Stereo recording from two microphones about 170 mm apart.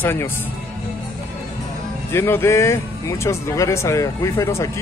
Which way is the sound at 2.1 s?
15° left (ahead or behind).